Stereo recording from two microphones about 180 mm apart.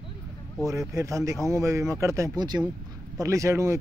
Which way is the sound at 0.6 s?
15° right (ahead or behind).